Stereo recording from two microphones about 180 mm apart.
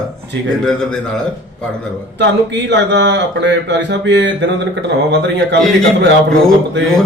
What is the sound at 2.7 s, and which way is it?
Speech, 75° right (ahead or behind).